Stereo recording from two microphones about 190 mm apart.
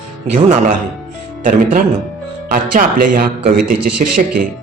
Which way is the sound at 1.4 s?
45° right (ahead or behind).